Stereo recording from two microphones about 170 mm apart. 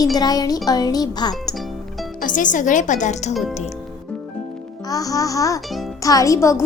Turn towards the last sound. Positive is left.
turn(degrees=20)  # may be behind; listen again after turning